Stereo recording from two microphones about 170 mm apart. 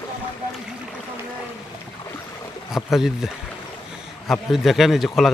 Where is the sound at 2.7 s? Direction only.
Centre (ahead or behind).